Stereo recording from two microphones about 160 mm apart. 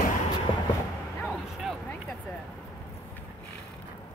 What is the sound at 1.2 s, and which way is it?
Bow-wow, centre (ahead or behind).